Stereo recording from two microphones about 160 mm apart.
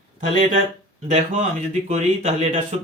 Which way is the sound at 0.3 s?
45° right (ahead or behind).